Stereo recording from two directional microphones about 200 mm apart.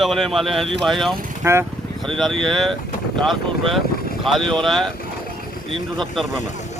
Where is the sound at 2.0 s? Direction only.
5° left (ahead or behind).